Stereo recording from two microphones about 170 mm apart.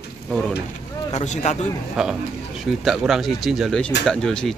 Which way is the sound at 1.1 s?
40° left (ahead or behind).